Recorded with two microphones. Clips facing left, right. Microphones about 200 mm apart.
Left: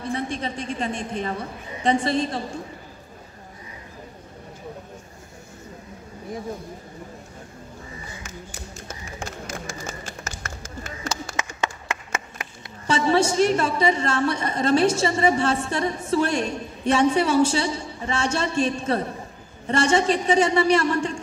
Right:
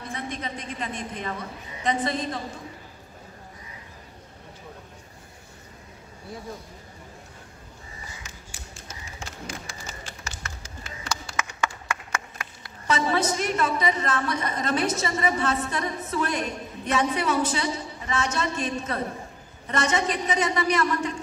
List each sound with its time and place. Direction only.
0.1 s a woman's voice: 30° left (ahead or behind)
8.2 s a sound: 45° left (ahead or behind)
10.4 s run: 45° left (ahead or behind)
11.3 s a woman's voice: 25° left (ahead or behind)